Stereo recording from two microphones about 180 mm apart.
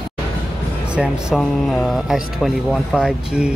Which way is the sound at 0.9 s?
5° right (ahead or behind).